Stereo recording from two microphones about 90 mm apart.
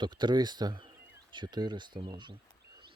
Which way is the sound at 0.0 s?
55° right (ahead or behind).